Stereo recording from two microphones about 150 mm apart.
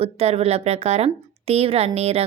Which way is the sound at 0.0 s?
45° right (ahead or behind).